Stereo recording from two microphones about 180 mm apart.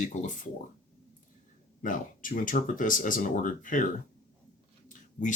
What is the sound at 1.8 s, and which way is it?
Speech, 45° left (ahead or behind).